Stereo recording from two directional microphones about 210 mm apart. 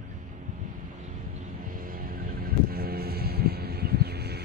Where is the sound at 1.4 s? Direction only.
40° right (ahead or behind).